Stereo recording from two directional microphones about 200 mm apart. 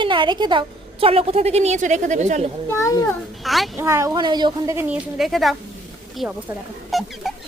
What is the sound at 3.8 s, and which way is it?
Speech, 15° right (ahead or behind).